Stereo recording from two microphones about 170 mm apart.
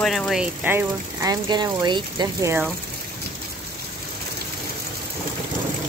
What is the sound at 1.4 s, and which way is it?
Speech, 25° right (ahead or behind).